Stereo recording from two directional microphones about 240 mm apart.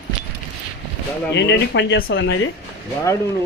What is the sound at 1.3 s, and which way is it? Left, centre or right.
Speech, left.